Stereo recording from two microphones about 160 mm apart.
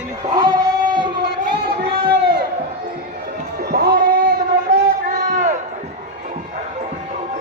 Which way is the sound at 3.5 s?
75° right (ahead or behind).